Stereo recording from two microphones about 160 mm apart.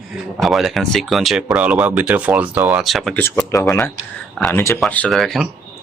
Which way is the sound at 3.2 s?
15° left (ahead or behind).